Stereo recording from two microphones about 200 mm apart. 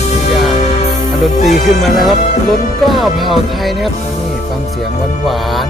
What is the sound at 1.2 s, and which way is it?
Speech, centre (ahead or behind).